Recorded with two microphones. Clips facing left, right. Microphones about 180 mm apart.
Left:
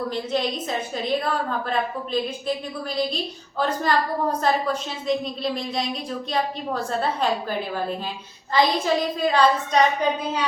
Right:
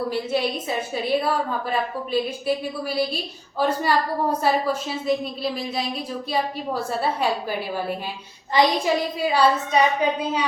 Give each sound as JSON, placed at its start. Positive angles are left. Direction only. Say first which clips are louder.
{"t": 0.1, "sound": "a woman's voice", "louder": "right 1 dB", "side_deg": -10}
{"t": 8.5, "sound": "a woman's voice", "louder": "right 1 dB", "side_deg": -15}